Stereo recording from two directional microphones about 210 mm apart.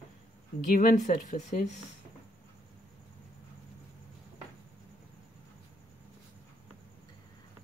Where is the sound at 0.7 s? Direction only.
40° left (ahead or behind).